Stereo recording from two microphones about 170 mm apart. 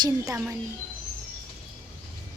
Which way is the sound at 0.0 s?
15° right (ahead or behind).